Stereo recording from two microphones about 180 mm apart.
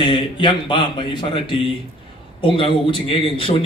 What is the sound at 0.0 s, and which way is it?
A man's voice, 25° left (ahead or behind).